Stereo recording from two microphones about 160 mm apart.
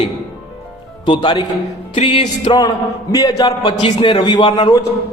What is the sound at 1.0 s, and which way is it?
Speech, 30° left (ahead or behind).